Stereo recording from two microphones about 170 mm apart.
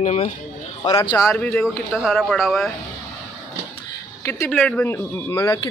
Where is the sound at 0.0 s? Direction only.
40° left (ahead or behind).